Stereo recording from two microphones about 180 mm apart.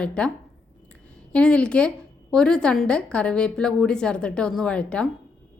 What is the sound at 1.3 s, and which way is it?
A woman's voice, 5° left (ahead or behind).